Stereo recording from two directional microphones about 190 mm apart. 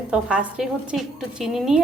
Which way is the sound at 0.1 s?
5° right (ahead or behind).